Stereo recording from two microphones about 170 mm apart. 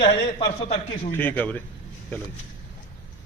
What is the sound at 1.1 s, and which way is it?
Speech, 10° left (ahead or behind).